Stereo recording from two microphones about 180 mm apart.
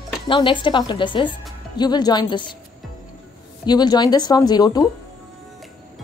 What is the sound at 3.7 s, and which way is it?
Speech, 25° left (ahead or behind).